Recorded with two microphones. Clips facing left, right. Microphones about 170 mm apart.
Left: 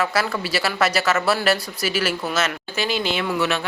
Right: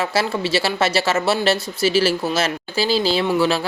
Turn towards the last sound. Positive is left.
turn(degrees=-30)  # may be behind; listen again after turning